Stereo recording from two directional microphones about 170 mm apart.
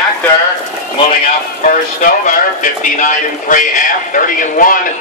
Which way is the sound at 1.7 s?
55° left (ahead or behind).